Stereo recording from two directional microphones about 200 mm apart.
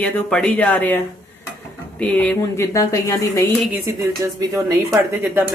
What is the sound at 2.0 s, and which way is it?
Speech, 5° left (ahead or behind).